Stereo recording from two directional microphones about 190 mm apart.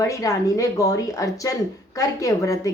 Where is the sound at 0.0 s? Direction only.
15° left (ahead or behind).